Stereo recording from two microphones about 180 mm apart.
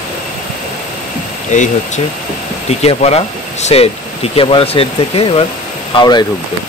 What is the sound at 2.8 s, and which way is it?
Speech, 35° left (ahead or behind).